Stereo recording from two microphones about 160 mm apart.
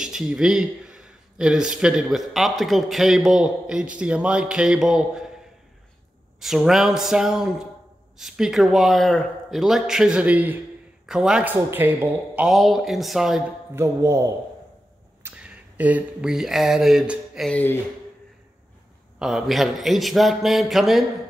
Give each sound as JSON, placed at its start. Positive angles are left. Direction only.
{"t": 0.0, "sound": "a man's voice", "side_deg": 0}
{"t": 6.4, "sound": "a man's voice", "side_deg": 0}
{"t": 12.4, "sound": "a man's voice", "side_deg": 0}
{"t": 13.7, "sound": "speech", "side_deg": -20}
{"t": 15.2, "sound": "speech", "side_deg": -5}
{"t": 19.1, "sound": "a man's voice", "side_deg": -5}